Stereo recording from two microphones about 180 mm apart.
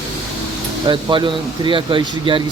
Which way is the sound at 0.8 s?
25° right (ahead or behind).